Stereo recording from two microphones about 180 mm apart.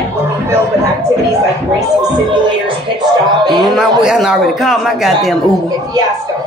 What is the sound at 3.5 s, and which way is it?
Speech, centre (ahead or behind).